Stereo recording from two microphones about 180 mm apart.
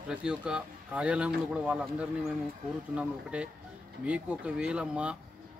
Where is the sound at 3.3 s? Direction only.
5° right (ahead or behind).